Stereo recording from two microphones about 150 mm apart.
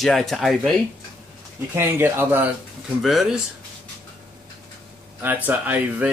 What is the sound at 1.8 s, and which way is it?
Speech, 15° right (ahead or behind).